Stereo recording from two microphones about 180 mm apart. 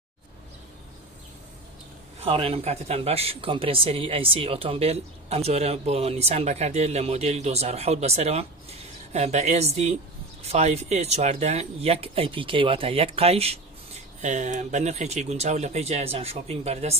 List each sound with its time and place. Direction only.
2.2 s speech: 30° right (ahead or behind)